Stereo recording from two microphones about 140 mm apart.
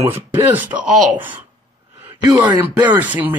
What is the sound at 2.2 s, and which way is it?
Speech, 30° right (ahead or behind).